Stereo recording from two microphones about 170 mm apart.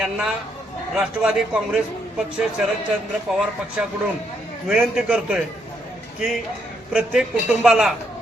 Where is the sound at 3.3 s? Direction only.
Centre (ahead or behind).